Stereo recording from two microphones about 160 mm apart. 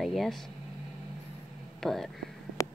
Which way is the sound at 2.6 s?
20° left (ahead or behind).